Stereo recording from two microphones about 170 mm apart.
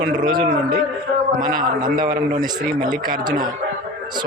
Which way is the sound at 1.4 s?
55° right (ahead or behind).